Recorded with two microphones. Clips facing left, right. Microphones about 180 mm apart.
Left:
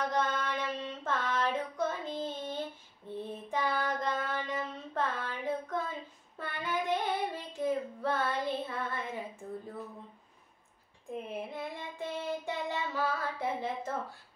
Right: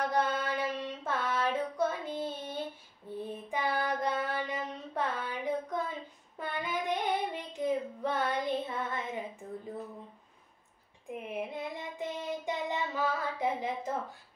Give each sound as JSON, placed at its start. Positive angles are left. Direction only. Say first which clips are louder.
{"t": 0.1, "sound": "child singing", "louder": "right 2 dB", "side_deg": -10}
{"t": 11.1, "sound": "child singing", "louder": "right 1 dB", "side_deg": -15}